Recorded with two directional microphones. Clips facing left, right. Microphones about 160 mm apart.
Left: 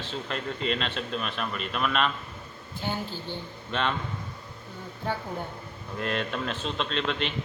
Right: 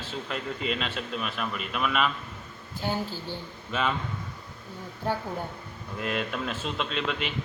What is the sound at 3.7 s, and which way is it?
Speech, 5° right (ahead or behind).